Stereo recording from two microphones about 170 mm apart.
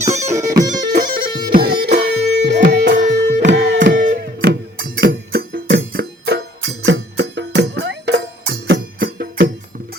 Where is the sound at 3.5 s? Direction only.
90° right.